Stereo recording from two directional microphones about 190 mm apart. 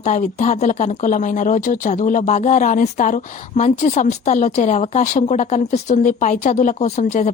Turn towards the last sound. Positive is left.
turn(degrees=35)  # may be behind; listen again after turning